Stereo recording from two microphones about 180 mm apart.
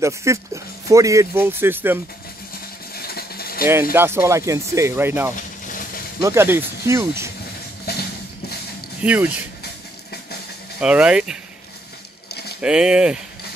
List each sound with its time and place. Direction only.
0.0 s speech: 15° right (ahead or behind)
2.9 s vehicle: 60° left (ahead or behind)
3.9 s speech: 15° right (ahead or behind)
5.3 s a sound: 50° left (ahead or behind)
6.2 s speech: 15° right (ahead or behind)
7.9 s a sound: 60° left (ahead or behind)
9.0 s speech: 10° right (ahead or behind)
10.8 s speech: 5° right (ahead or behind)
12.6 s speech: 5° right (ahead or behind)